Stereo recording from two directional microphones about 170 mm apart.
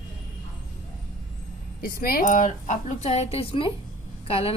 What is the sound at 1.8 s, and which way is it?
A woman's voice, 60° left (ahead or behind).